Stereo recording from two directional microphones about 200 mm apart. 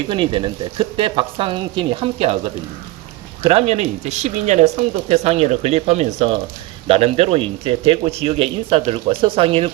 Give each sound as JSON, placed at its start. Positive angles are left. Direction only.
{"t": 0.1, "sound": "a man's voice", "side_deg": -25}